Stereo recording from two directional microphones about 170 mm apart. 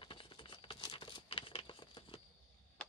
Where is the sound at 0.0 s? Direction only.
30° left (ahead or behind).